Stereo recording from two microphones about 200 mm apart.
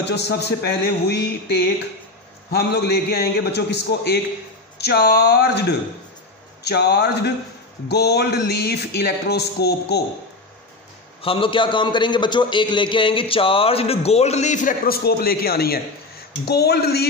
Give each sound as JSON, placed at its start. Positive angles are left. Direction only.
{"t": 0.0, "sound": "music", "side_deg": 55}
{"t": 2.5, "sound": "speech", "side_deg": 55}
{"t": 6.6, "sound": "music", "side_deg": 55}
{"t": 7.9, "sound": "speech", "side_deg": 55}
{"t": 11.2, "sound": "a man's voice", "side_deg": 25}